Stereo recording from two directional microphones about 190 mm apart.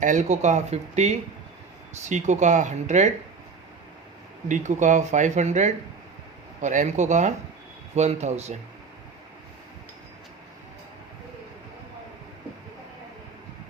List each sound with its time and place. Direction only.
0.0 s speech: 40° right (ahead or behind)
4.4 s speech: 40° right (ahead or behind)